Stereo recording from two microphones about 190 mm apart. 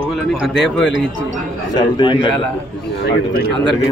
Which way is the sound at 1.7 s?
25° left (ahead or behind).